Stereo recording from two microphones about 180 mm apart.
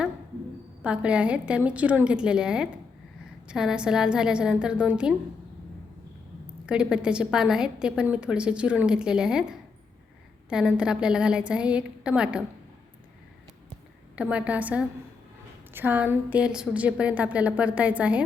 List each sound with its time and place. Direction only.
0.8 s a woman's voice: 5° right (ahead or behind)
6.7 s a woman's voice: 5° right (ahead or behind)
14.2 s a woman's voice: 5° right (ahead or behind)